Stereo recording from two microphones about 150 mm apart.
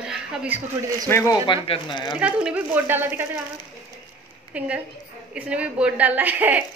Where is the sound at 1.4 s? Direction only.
35° left (ahead or behind).